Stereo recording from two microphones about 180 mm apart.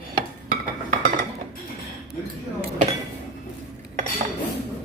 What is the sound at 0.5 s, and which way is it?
Cutlery, 50° right (ahead or behind).